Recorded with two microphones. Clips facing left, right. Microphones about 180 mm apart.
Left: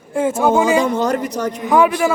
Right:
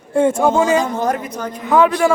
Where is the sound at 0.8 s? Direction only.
70° left (ahead or behind).